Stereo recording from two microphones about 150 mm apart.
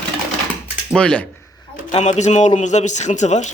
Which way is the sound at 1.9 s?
50° left (ahead or behind).